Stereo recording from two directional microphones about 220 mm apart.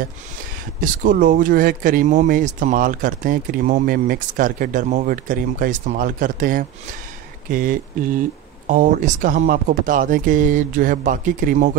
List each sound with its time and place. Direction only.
0.7 s speech: 40° right (ahead or behind)